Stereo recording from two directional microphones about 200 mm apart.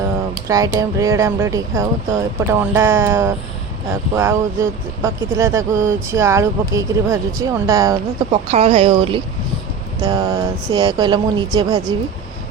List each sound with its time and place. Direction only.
0.4 s speech: 15° right (ahead or behind)
8.3 s speech: 35° right (ahead or behind)